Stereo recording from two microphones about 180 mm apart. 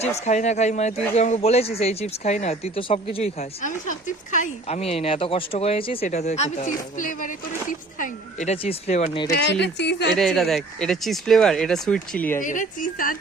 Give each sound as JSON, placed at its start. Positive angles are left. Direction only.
{"t": 0.3, "sound": "speech", "side_deg": 40}
{"t": 3.6, "sound": "speech", "side_deg": 45}
{"t": 9.3, "sound": "speech", "side_deg": 70}
{"t": 10.2, "sound": "speech", "side_deg": 0}
{"t": 12.4, "sound": "a woman's voice", "side_deg": 45}